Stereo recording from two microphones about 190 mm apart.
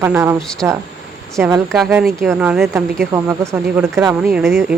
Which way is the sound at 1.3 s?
15° right (ahead or behind).